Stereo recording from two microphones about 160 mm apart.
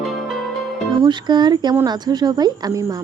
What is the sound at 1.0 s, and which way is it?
A woman's voice, 30° right (ahead or behind).